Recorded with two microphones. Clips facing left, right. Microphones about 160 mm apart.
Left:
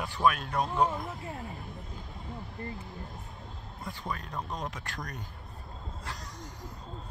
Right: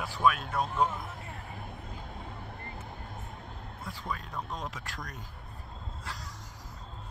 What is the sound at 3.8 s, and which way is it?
Speech, centre (ahead or behind).